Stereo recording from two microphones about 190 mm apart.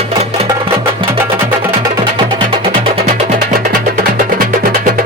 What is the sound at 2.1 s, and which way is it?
Music, 30° right (ahead or behind).